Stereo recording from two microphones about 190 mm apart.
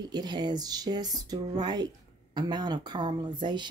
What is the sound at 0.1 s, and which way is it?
Speech, 20° right (ahead or behind).